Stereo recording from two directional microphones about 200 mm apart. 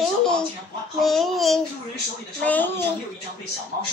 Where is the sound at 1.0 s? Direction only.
Centre (ahead or behind).